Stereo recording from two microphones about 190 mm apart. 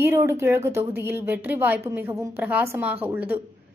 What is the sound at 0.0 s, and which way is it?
Speech, 15° right (ahead or behind).